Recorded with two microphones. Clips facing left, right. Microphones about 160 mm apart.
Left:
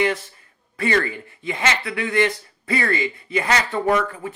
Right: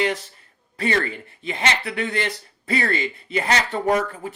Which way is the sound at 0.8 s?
35° right (ahead or behind).